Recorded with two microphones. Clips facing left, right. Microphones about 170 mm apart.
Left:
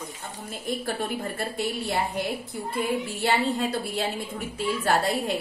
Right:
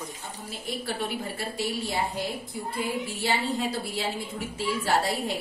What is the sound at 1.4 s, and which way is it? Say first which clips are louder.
Speech: left 2 dB; 55° left (ahead or behind).